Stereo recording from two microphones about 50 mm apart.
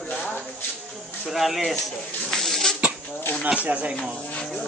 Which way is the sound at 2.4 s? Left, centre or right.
Centre.